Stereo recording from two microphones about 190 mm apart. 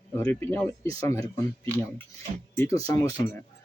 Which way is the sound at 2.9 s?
20° left (ahead or behind).